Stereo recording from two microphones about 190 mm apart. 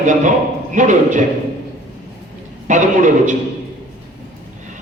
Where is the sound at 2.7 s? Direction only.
40° right (ahead or behind).